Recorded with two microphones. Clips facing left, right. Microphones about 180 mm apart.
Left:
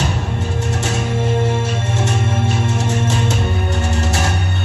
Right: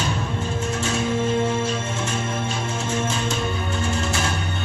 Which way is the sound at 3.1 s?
40° left (ahead or behind).